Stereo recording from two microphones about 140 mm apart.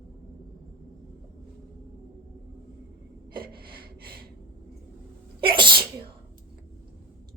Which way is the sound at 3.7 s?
90° right.